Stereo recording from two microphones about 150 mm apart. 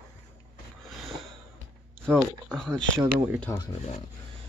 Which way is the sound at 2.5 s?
5° left (ahead or behind).